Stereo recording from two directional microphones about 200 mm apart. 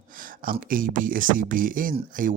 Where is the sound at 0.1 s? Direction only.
45° right (ahead or behind).